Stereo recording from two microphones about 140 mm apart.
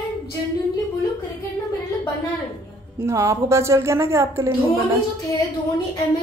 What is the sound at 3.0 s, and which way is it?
Speech, 20° right (ahead or behind).